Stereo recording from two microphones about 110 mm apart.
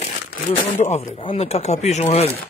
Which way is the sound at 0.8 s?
90° left.